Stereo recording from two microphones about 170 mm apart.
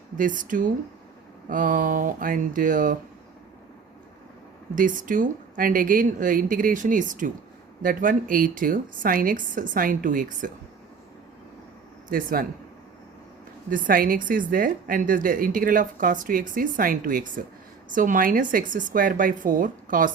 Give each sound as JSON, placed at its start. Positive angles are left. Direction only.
{"t": 0.2, "sound": "a woman's voice", "side_deg": -50}
{"t": 4.7, "sound": "a woman's voice", "side_deg": -50}
{"t": 12.0, "sound": "speech", "side_deg": -55}
{"t": 13.7, "sound": "a woman's voice", "side_deg": -55}